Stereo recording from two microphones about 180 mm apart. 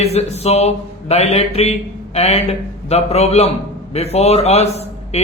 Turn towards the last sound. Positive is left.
turn(degrees=35)  # may be behind; listen again after turning